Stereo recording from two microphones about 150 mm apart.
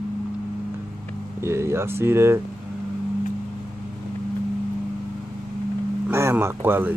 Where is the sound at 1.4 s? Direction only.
15° right (ahead or behind).